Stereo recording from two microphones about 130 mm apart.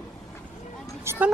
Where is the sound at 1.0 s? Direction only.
20° right (ahead or behind).